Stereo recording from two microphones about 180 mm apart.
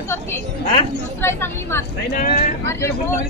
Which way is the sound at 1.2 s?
15° left (ahead or behind).